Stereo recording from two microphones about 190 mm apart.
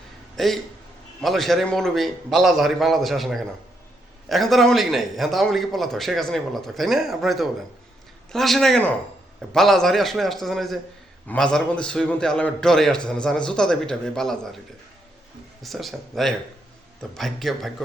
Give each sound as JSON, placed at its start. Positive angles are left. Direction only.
{"t": 0.3, "sound": "a man's voice", "side_deg": 0}
{"t": 15.6, "sound": "a man's voice", "side_deg": 0}